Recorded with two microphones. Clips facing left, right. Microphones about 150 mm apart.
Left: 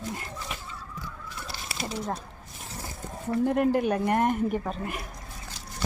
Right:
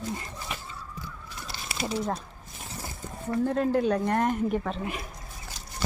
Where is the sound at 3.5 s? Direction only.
15° left (ahead or behind).